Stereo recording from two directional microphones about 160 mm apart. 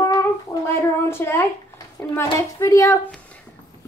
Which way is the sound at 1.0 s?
15° left (ahead or behind).